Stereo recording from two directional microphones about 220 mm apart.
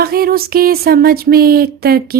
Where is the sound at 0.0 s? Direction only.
45° right (ahead or behind).